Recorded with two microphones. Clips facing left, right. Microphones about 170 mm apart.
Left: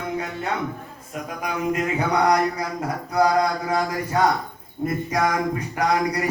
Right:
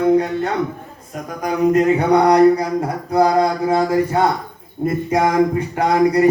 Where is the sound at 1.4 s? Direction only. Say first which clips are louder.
Right 10 dB; 35° right (ahead or behind).